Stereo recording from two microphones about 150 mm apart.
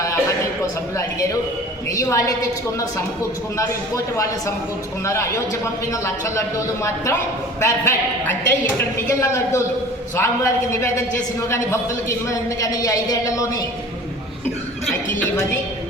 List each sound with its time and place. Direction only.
0.0 s a sound: 20° left (ahead or behind)
1.9 s a man's voice: 20° left (ahead or behind)
3.6 s a man's voice: 20° left (ahead or behind)